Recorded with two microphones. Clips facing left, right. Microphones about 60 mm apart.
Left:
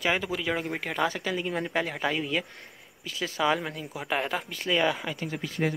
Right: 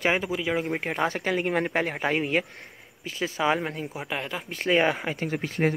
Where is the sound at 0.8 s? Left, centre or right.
Right.